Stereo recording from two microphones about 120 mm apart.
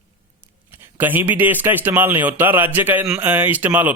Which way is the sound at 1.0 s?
15° right (ahead or behind).